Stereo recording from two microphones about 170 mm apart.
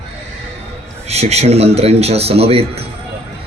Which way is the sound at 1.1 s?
40° right (ahead or behind).